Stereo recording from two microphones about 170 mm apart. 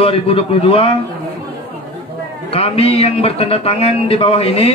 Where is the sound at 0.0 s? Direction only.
35° left (ahead or behind).